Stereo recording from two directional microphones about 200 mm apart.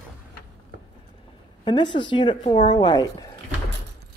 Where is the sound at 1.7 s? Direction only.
25° left (ahead or behind).